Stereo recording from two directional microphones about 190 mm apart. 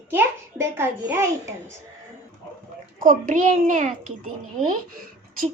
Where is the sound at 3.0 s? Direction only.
45° right (ahead or behind).